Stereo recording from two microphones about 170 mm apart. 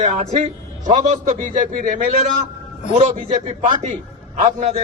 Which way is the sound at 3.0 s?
35° right (ahead or behind).